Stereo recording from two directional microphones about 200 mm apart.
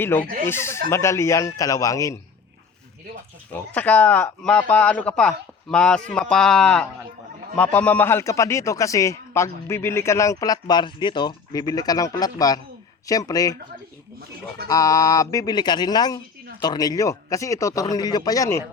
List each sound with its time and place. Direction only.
0.0 s speech: 10° left (ahead or behind)
3.5 s speech: 5° left (ahead or behind)
14.7 s speech: 20° left (ahead or behind)